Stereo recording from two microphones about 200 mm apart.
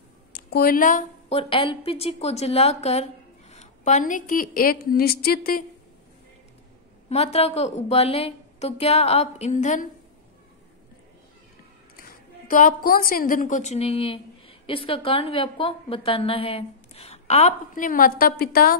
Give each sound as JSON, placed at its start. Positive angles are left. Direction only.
{"t": 0.3, "sound": "a woman's voice", "side_deg": 50}
{"t": 1.3, "sound": "a woman's voice", "side_deg": 25}
{"t": 7.1, "sound": "a woman's voice", "side_deg": 30}
{"t": 12.0, "sound": "a woman's voice", "side_deg": 45}